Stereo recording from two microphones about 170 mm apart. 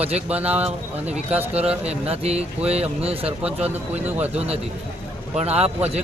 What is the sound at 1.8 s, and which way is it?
A man's voice, 35° right (ahead or behind).